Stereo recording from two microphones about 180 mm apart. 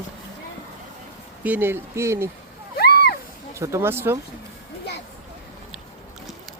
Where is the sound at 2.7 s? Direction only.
60° left (ahead or behind).